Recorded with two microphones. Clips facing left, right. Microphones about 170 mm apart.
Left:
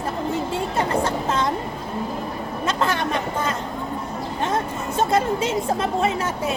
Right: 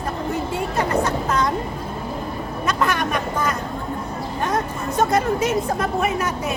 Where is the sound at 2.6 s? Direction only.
25° left (ahead or behind).